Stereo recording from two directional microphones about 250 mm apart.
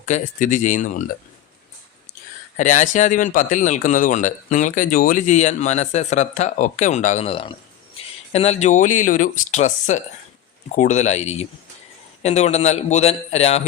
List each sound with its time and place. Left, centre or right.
0.0 s speech: left
2.6 s speech: left